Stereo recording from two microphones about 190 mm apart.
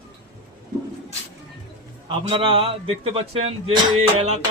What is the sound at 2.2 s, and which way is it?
Speech, 30° right (ahead or behind).